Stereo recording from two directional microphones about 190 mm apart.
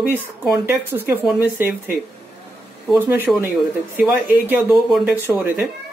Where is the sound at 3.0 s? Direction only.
10° right (ahead or behind).